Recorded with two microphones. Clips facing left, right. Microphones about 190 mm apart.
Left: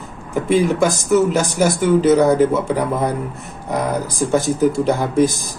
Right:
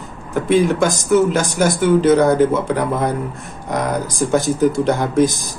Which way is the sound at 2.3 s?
30° left (ahead or behind).